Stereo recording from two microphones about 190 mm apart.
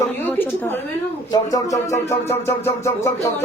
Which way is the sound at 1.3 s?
20° left (ahead or behind).